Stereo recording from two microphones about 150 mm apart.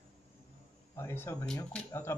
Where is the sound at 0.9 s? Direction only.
15° left (ahead or behind).